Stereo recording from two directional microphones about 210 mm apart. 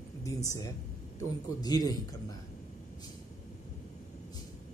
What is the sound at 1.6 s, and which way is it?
Speech, 20° left (ahead or behind).